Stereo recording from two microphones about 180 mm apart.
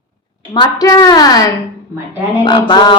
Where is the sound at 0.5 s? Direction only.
20° left (ahead or behind).